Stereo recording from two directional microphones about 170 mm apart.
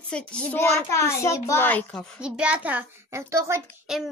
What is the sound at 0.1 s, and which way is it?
Speech, 5° left (ahead or behind).